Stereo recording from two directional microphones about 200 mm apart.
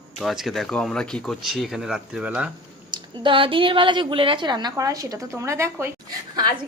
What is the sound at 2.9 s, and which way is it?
A woman's voice, 25° right (ahead or behind).